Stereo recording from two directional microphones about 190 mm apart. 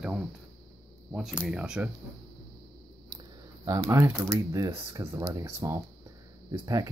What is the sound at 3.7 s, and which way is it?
Speech, 15° right (ahead or behind).